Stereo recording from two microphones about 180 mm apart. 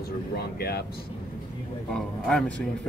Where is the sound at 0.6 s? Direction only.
60° left (ahead or behind).